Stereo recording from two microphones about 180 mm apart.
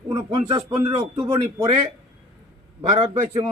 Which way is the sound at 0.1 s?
25° right (ahead or behind).